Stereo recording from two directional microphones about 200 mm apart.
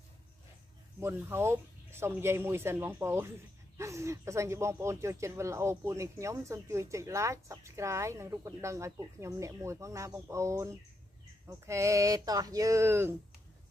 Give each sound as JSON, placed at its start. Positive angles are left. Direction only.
{"t": 1.0, "sound": "speech", "side_deg": -10}